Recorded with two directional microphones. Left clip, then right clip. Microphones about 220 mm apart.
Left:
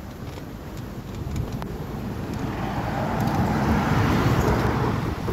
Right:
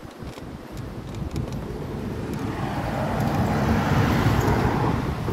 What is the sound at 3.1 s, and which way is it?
Vehicle, 25° right (ahead or behind).